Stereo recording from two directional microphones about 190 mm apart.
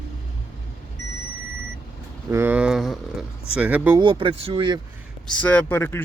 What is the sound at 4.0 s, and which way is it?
Speech, 25° right (ahead or behind).